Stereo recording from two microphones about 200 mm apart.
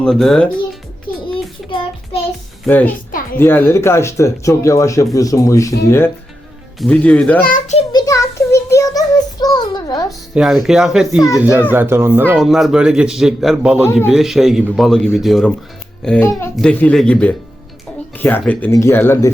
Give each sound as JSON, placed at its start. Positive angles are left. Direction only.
{"t": 0.0, "sound": "a man's voice", "side_deg": 0}
{"t": 1.3, "sound": "child singing", "side_deg": 25}
{"t": 2.6, "sound": "speech", "side_deg": 10}
{"t": 6.7, "sound": "speech", "side_deg": 5}
{"t": 7.4, "sound": "a child's voice", "side_deg": 45}
{"t": 7.8, "sound": "child singing", "side_deg": 20}
{"t": 10.1, "sound": "a child's voice", "side_deg": 0}